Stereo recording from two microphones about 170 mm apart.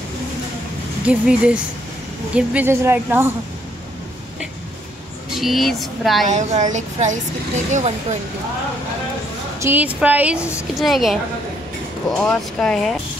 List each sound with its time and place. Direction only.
1.0 s a woman's voice: 5° right (ahead or behind)
5.3 s speech: centre (ahead or behind)
6.2 s speech: 45° right (ahead or behind)
9.6 s a woman's voice: 10° right (ahead or behind)